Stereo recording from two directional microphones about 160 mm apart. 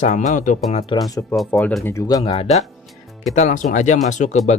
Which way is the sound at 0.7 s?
35° left (ahead or behind).